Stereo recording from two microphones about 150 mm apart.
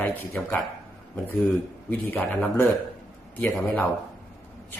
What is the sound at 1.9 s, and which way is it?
Speech, 10° left (ahead or behind).